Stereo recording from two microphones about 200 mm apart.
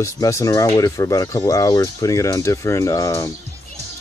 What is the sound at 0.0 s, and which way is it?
Speech, 15° left (ahead or behind).